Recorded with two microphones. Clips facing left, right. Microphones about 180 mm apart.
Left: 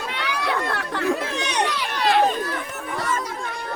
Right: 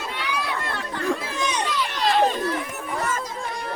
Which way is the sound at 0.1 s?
75° left (ahead or behind).